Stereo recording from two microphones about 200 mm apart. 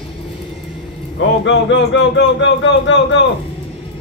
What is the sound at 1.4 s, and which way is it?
Speech, 65° left (ahead or behind).